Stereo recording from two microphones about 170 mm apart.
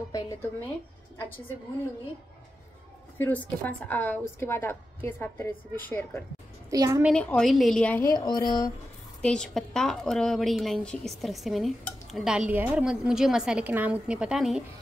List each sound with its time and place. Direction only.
0.1 s a woman's voice: 15° left (ahead or behind)
3.2 s a woman's voice: 10° left (ahead or behind)
6.7 s a woman's voice: 20° right (ahead or behind)
7.2 s a woman's voice: 5° left (ahead or behind); by 8.7 s 20° left (ahead or behind)
9.2 s a woman's voice: 5° left (ahead or behind)